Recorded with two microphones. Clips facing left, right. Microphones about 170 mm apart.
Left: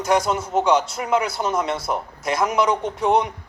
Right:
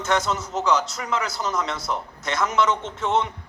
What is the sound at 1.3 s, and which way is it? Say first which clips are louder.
Speech: left 4 dB; 30° left (ahead or behind).